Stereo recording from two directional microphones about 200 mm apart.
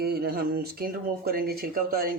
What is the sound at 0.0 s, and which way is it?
Speech, 50° right (ahead or behind).